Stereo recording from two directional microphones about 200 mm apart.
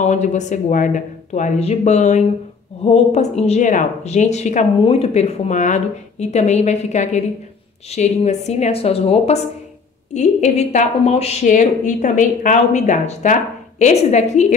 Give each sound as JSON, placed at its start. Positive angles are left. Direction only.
{"t": 0.0, "sound": "a woman's voice", "side_deg": 35}